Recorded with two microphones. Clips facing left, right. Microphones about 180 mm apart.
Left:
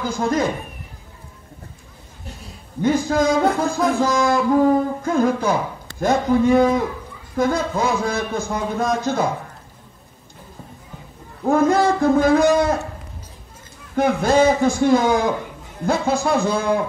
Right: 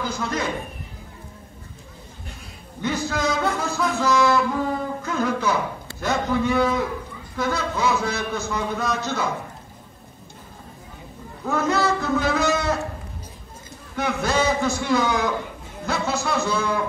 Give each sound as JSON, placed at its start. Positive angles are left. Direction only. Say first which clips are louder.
{"t": 0.2, "sound": "music", "louder": "left 10 dB", "side_deg": 45}
{"t": 2.8, "sound": "music", "louder": "left 7 dB", "side_deg": 50}
{"t": 11.4, "sound": "music", "louder": "left 6 dB", "side_deg": 50}
{"t": 13.9, "sound": "music", "louder": "left 7 dB", "side_deg": 50}